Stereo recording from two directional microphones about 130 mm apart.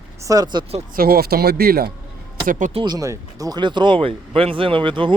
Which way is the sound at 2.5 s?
75° right (ahead or behind).